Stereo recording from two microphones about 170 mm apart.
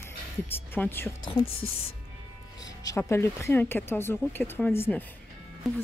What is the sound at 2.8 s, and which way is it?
Speech, 15° left (ahead or behind).